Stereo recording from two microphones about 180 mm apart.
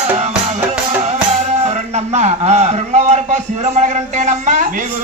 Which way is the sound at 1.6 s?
40° right (ahead or behind).